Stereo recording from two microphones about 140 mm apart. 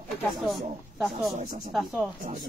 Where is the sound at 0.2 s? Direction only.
Centre (ahead or behind).